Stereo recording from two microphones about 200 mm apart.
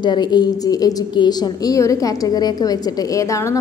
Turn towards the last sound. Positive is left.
turn(degrees=15)  # may be behind; listen again after turning